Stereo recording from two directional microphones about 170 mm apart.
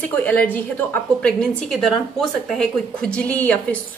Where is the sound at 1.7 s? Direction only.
Centre (ahead or behind).